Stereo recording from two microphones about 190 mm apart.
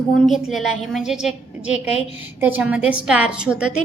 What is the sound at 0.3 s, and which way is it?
A woman's voice, centre (ahead or behind).